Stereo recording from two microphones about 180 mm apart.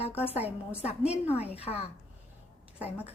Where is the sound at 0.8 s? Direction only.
35° left (ahead or behind).